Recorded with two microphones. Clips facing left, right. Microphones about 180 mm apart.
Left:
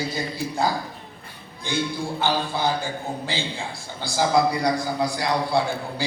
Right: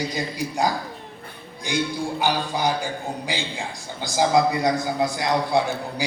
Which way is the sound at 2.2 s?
15° right (ahead or behind).